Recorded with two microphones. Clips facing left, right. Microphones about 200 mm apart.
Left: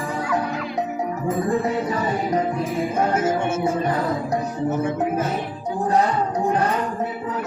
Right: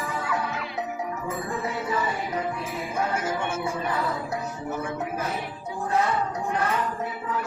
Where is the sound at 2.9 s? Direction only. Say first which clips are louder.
Left 6 dB; 25° left (ahead or behind).